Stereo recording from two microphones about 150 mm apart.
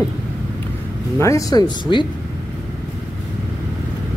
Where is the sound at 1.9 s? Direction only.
35° left (ahead or behind).